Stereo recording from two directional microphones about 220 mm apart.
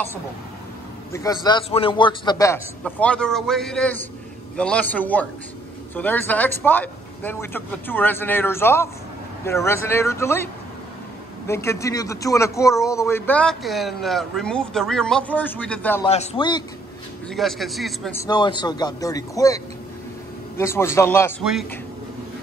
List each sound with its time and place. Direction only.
1.1 s a man's voice: 15° left (ahead or behind)
16.0 s a man's voice: 25° left (ahead or behind)
17.3 s a man's voice: centre (ahead or behind)
18.1 s a man's voice: 15° left (ahead or behind)